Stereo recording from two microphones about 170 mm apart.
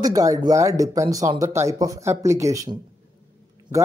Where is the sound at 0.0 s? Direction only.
20° right (ahead or behind).